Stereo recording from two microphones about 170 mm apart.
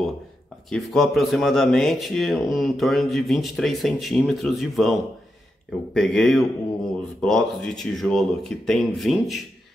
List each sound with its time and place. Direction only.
0.7 s speech: centre (ahead or behind)